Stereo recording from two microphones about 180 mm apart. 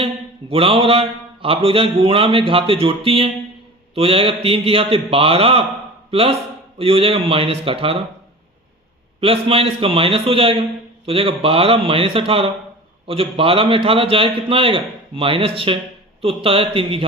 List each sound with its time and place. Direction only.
0.0 s mantra: 30° right (ahead or behind)
6.1 s speech: 30° right (ahead or behind)
6.7 s mantra: 30° right (ahead or behind)
9.2 s mantra: 30° right (ahead or behind)
13.1 s a man's voice: 30° right (ahead or behind)
16.2 s mantra: 30° right (ahead or behind)